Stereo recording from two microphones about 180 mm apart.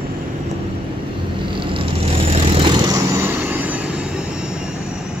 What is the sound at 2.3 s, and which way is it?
Vehicle, 30° right (ahead or behind).